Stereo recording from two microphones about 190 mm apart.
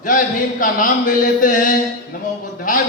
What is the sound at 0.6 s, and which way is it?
A man's voice, 45° left (ahead or behind).